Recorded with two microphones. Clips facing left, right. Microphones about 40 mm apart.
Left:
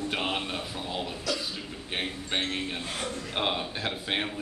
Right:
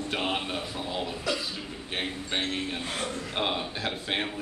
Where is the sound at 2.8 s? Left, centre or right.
Centre.